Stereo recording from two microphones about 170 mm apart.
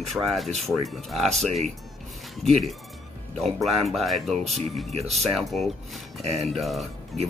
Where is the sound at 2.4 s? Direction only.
Centre (ahead or behind).